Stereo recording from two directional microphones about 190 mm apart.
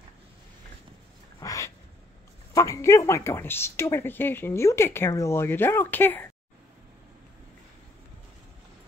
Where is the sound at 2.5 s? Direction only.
15° left (ahead or behind).